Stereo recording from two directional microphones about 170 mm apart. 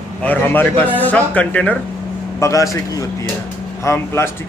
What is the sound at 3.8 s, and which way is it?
Speech, 15° left (ahead or behind).